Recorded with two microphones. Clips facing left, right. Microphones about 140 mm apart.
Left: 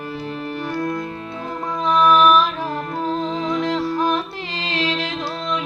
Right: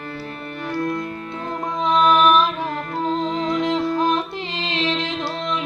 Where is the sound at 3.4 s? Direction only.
25° left (ahead or behind).